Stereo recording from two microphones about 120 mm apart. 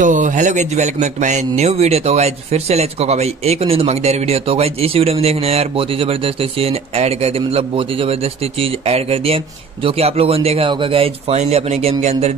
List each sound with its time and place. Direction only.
0.0 s a man's voice: 90° right; by 12.4 s 65° right (ahead or behind)